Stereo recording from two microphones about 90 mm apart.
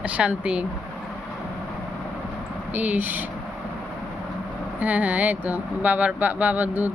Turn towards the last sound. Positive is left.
turn(degrees=-20)  # may be behind; listen again after turning